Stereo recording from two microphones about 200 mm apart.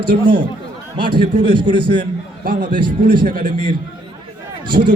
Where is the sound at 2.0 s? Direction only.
40° right (ahead or behind).